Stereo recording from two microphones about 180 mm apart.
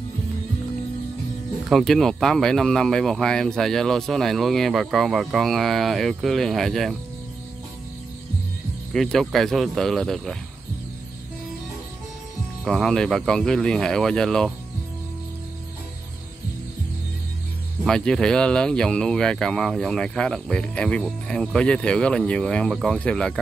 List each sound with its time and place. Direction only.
1.7 s speech: centre (ahead or behind)
8.9 s speech: centre (ahead or behind)
12.6 s speech: 5° left (ahead or behind)
17.8 s speech: 5° left (ahead or behind)